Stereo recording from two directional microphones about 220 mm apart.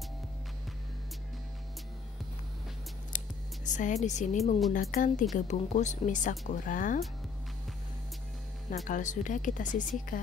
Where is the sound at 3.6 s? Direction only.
35° left (ahead or behind).